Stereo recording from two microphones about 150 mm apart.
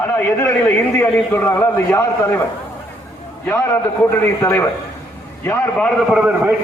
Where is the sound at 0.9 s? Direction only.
15° left (ahead or behind).